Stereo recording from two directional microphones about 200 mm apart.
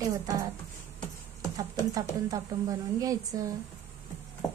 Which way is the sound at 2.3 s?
15° right (ahead or behind).